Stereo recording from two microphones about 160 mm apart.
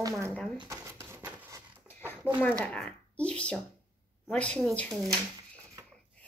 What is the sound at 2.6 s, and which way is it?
A woman's voice, 10° left (ahead or behind).